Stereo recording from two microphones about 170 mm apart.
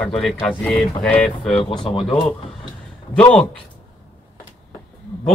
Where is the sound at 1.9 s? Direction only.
30° left (ahead or behind).